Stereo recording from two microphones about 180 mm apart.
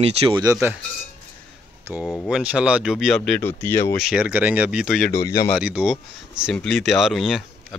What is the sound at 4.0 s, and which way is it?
A man's voice, 5° right (ahead or behind).